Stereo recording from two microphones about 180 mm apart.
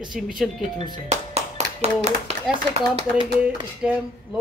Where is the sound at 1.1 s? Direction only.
40° right (ahead or behind).